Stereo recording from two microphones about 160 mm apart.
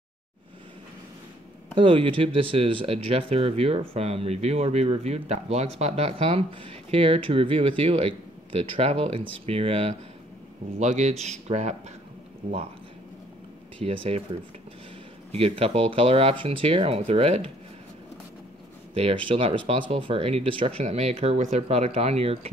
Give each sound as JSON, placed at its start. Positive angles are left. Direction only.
{"t": 1.8, "sound": "speech", "side_deg": -35}
{"t": 13.7, "sound": "speech", "side_deg": -35}
{"t": 15.3, "sound": "speech", "side_deg": -35}
{"t": 18.9, "sound": "speech", "side_deg": -40}